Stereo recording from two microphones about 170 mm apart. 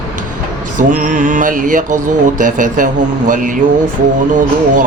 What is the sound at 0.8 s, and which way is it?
Mantra, 50° right (ahead or behind).